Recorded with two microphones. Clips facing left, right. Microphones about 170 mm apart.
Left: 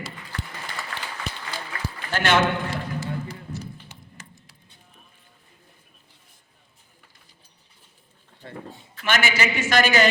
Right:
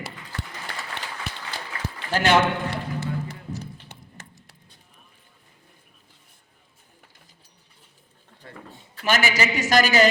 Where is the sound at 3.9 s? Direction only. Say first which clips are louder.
Right 1 dB; 60° right (ahead or behind).